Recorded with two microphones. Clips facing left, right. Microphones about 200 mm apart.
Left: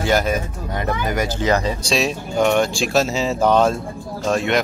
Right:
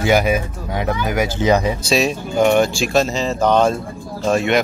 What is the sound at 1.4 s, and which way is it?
Speech, 15° right (ahead or behind).